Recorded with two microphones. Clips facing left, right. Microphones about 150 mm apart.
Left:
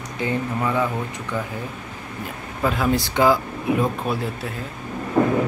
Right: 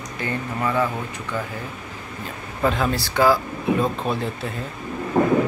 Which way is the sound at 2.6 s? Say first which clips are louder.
Right 1 dB; 5° left (ahead or behind).